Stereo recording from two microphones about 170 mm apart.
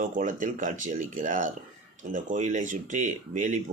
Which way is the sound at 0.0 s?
50° right (ahead or behind).